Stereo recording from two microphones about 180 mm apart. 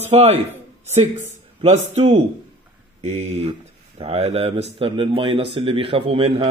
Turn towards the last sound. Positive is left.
turn(degrees=-30)  # may be behind; listen again after turning